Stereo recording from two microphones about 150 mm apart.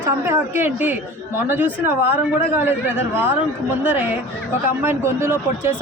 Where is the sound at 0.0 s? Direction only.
15° right (ahead or behind).